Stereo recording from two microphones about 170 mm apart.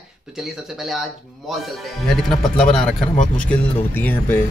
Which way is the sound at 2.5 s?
5° left (ahead or behind).